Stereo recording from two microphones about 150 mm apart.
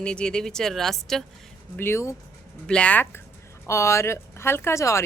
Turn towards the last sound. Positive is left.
turn(degrees=20)  # may be behind; listen again after turning